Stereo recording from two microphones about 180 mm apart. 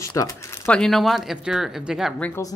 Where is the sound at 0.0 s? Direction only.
20° left (ahead or behind).